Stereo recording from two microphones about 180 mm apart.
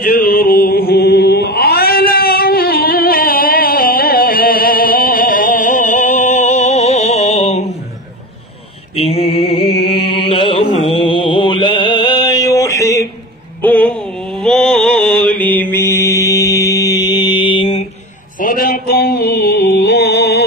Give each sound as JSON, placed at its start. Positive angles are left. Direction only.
{"t": 0.0, "sound": "chant", "side_deg": 55}
{"t": 8.9, "sound": "mantra", "side_deg": 30}
{"t": 18.4, "sound": "mantra", "side_deg": 55}